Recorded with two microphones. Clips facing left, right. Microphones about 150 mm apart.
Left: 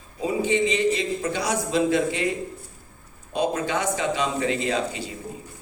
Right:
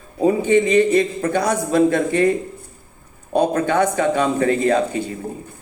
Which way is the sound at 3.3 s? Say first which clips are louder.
Right 7 dB; 55° right (ahead or behind).